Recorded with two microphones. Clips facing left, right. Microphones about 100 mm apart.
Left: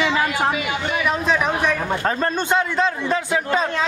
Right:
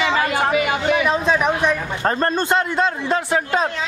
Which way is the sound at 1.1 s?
20° right (ahead or behind).